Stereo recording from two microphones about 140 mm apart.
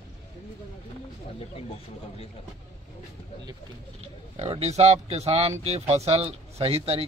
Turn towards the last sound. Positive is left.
turn(degrees=-45)  # may be behind; listen again after turning